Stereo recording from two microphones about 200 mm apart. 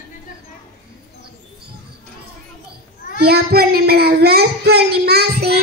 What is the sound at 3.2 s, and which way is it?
Speech, 50° right (ahead or behind).